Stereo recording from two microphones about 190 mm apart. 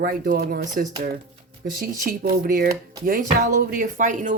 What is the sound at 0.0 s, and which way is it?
Speech, 50° right (ahead or behind).